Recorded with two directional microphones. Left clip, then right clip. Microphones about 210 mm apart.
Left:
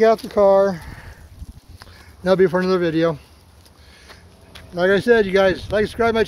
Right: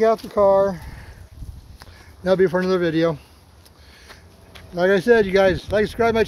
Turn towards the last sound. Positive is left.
turn(degrees=0)  # may be behind; listen again after turning